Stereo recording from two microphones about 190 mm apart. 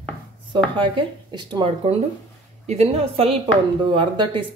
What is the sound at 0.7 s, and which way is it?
Speech, 25° right (ahead or behind).